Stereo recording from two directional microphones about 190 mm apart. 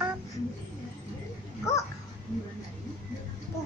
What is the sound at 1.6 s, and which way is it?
Speech, 15° left (ahead or behind).